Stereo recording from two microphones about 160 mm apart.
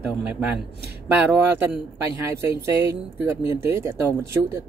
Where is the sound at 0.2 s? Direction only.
10° right (ahead or behind).